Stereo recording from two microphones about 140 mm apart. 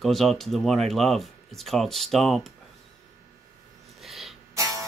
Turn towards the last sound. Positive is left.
turn(degrees=-20)  # may be behind; listen again after turning